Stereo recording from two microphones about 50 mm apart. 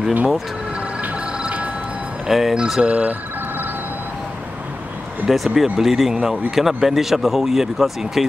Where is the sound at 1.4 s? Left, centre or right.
Right.